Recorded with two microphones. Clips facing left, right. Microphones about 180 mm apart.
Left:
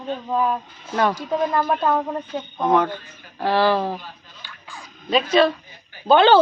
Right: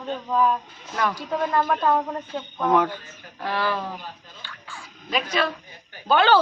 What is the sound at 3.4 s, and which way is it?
Speech, 30° left (ahead or behind).